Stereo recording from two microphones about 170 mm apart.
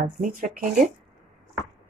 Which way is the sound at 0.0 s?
50° right (ahead or behind).